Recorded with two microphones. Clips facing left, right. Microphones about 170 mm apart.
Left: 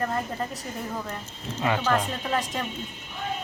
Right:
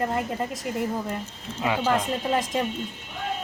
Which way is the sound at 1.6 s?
10° right (ahead or behind).